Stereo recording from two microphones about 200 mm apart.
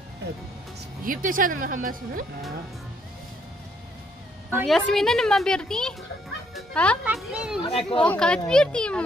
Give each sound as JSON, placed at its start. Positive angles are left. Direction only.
{"t": 1.0, "sound": "speech", "side_deg": -45}
{"t": 4.6, "sound": "a woman's voice", "side_deg": 0}
{"t": 7.6, "sound": "speech", "side_deg": 30}
{"t": 8.0, "sound": "a woman's voice", "side_deg": 5}